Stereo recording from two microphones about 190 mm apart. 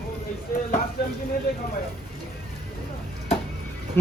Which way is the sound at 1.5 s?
55° left (ahead or behind).